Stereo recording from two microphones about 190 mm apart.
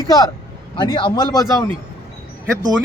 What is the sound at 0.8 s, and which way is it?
Speech, 25° left (ahead or behind).